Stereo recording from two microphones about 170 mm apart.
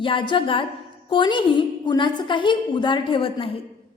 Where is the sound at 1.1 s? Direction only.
30° left (ahead or behind).